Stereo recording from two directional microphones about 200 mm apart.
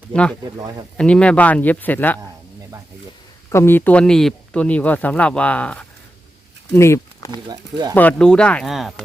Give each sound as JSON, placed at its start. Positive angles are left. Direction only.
{"t": 0.1, "sound": "speech", "side_deg": 5}
{"t": 3.5, "sound": "speech", "side_deg": 10}
{"t": 7.3, "sound": "speech", "side_deg": -20}
{"t": 7.9, "sound": "speech", "side_deg": 5}